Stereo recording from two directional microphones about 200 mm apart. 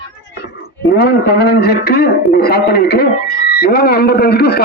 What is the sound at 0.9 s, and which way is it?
A man's voice, 50° left (ahead or behind).